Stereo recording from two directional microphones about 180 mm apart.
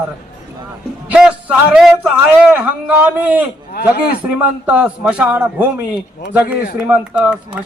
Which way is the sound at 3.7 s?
60° left (ahead or behind).